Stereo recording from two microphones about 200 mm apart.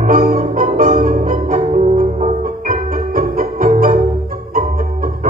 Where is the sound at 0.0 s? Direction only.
45° right (ahead or behind).